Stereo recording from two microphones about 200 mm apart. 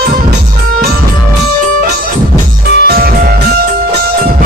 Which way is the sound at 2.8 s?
50° right (ahead or behind).